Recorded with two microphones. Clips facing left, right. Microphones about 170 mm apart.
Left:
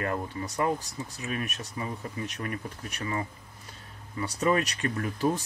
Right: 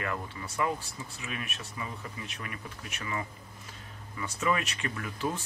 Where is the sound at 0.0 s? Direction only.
40° left (ahead or behind).